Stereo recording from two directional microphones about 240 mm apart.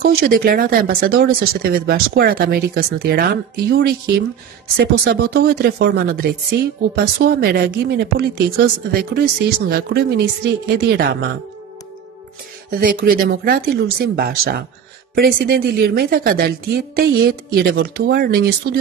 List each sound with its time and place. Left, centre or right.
0.0 s speech: right
12.8 s speech: right